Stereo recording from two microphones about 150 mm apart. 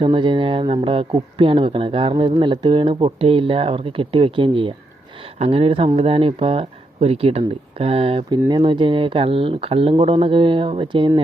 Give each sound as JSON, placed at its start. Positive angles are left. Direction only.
{"t": 0.0, "sound": "speech", "side_deg": -35}